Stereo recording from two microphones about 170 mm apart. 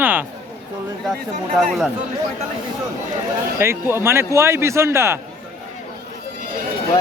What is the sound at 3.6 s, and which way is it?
Speech, 15° right (ahead or behind).